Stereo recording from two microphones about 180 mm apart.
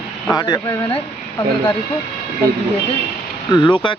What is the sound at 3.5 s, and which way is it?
Speech, 25° left (ahead or behind).